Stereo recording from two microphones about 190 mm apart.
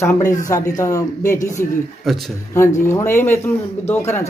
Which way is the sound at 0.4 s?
15° left (ahead or behind).